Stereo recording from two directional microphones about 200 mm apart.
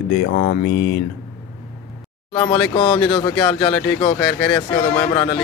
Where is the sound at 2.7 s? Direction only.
30° left (ahead or behind).